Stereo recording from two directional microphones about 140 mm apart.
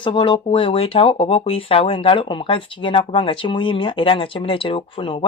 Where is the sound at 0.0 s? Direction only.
35° left (ahead or behind).